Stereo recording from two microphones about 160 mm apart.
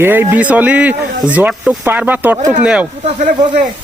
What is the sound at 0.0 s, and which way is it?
Speech, 15° right (ahead or behind).